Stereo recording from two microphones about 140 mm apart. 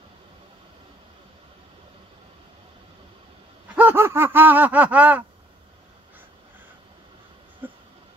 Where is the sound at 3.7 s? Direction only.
15° right (ahead or behind).